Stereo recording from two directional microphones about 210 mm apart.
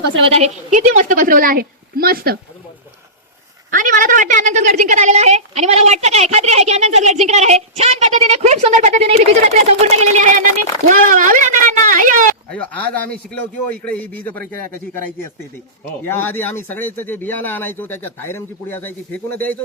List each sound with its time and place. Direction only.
0.3 s a woman's voice: 30° right (ahead or behind); by 2.4 s 45° right (ahead or behind)
3.7 s a woman's voice: 40° right (ahead or behind)
12.5 s speech: 5° left (ahead or behind)
16.0 s speech: 10° left (ahead or behind)